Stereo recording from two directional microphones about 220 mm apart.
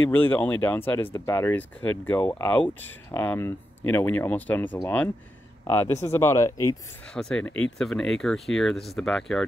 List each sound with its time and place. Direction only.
0.0 s speech: 10° left (ahead or behind)